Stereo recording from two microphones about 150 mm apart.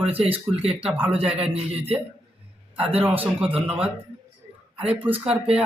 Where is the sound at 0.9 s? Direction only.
10° right (ahead or behind).